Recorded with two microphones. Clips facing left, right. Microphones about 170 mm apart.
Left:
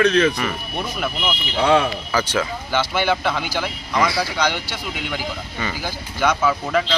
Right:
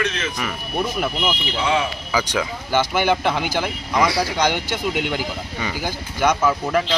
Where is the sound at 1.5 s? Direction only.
60° left (ahead or behind).